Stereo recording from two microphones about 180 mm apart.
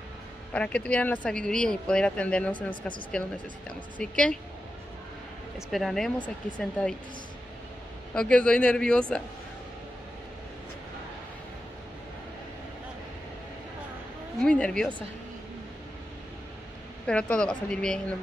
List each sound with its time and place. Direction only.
0.5 s speech: 5° left (ahead or behind)
2.5 s speech: 25° left (ahead or behind)
3.1 s a woman's voice: 5° left (ahead or behind)
5.7 s a woman's voice: centre (ahead or behind)
8.1 s a woman's voice: 5° left (ahead or behind)
14.4 s a woman's voice: 5° left (ahead or behind)
17.0 s a woman's voice: 5° left (ahead or behind)